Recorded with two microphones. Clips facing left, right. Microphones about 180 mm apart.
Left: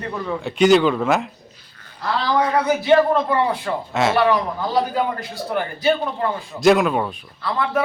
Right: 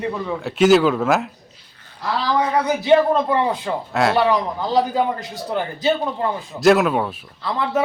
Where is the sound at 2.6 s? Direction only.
20° right (ahead or behind).